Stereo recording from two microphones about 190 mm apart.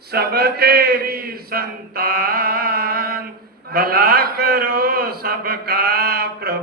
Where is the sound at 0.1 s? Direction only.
55° right (ahead or behind).